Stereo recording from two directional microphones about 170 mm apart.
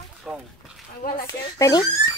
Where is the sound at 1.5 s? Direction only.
20° left (ahead or behind).